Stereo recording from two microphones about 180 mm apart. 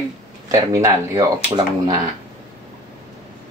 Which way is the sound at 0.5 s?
15° right (ahead or behind).